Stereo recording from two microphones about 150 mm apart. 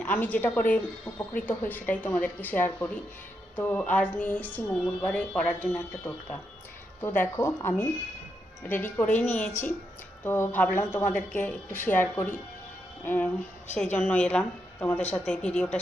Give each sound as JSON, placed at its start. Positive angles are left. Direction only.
{"t": 0.0, "sound": "speech", "side_deg": 10}